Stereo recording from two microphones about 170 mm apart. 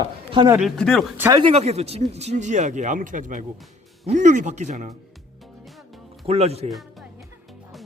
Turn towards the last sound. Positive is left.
turn(degrees=-35)  # may be behind; listen again after turning